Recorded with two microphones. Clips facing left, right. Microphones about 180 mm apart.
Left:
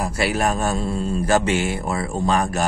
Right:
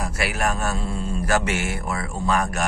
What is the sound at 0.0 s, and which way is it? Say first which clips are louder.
Speech: left 4 dB; 30° left (ahead or behind).